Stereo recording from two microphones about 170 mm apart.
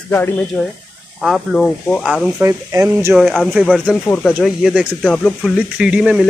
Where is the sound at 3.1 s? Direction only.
Centre (ahead or behind).